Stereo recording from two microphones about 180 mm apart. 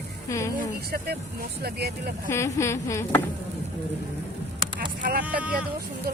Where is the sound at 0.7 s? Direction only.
60° right (ahead or behind).